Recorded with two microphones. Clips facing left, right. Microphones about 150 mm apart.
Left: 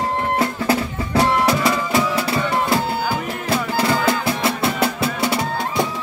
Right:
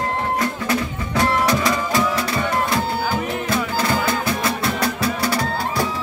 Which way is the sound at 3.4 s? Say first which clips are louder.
Left 5 dB; 30° left (ahead or behind).